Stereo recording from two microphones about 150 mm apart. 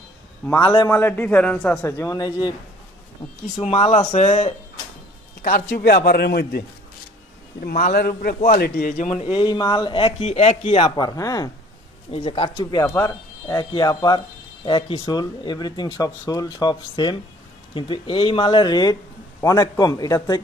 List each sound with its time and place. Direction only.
0.4 s a man's voice: 10° left (ahead or behind)
1.9 s speech: 20° left (ahead or behind)
3.6 s speech: 45° left (ahead or behind)
5.8 s speech: 90° left
7.6 s speech: 80° left; by 9.1 s 65° left (ahead or behind)
9.1 s speech: 35° left (ahead or behind)
11.0 s speech: 25° left (ahead or behind)
12.1 s speech: 35° left (ahead or behind)